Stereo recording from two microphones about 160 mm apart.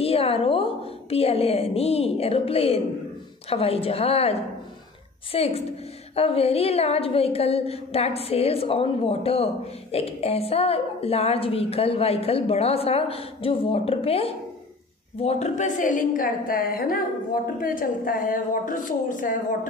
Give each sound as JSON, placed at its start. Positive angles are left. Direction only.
{"t": 0.0, "sound": "a woman's voice", "side_deg": 35}